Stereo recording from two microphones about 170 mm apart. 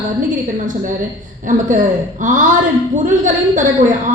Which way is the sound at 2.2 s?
50° right (ahead or behind).